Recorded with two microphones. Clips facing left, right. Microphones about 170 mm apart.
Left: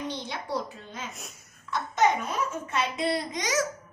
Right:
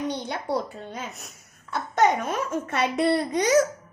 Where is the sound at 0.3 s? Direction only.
60° right (ahead or behind).